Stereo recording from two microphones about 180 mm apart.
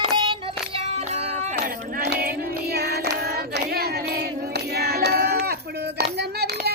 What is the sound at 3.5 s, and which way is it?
Hands, 60° right (ahead or behind).